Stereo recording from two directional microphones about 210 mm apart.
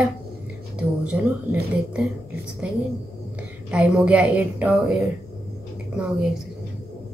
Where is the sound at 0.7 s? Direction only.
5° right (ahead or behind).